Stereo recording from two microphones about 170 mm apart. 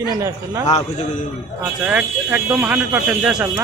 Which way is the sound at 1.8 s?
5° right (ahead or behind).